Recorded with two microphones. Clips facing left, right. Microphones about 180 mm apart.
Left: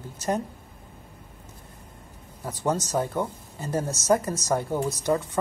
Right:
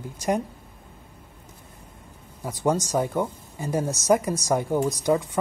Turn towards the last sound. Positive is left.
turn(degrees=-10)  # may be behind; listen again after turning